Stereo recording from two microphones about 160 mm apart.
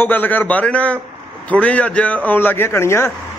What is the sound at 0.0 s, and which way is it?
A man's voice, 10° left (ahead or behind).